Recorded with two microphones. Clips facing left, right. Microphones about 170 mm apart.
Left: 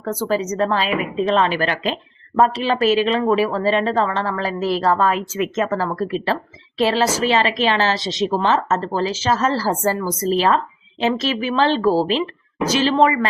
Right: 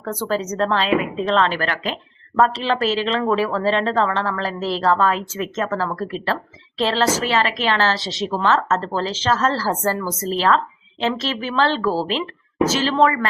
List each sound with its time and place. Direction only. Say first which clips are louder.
0.0 s speech: left 2 dB; 10° left (ahead or behind)